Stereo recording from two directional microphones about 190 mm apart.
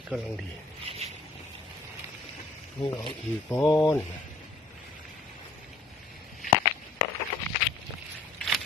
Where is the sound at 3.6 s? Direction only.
Centre (ahead or behind).